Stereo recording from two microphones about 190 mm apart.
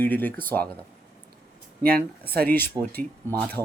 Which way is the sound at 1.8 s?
50° right (ahead or behind).